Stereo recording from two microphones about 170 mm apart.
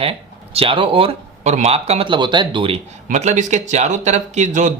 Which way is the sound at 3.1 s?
45° right (ahead or behind).